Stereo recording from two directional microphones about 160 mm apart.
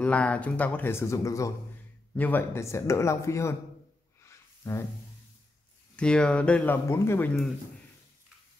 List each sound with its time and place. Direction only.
0.0 s speech: 10° left (ahead or behind)
4.2 s a sound: 15° left (ahead or behind)
5.9 s speech: 5° left (ahead or behind)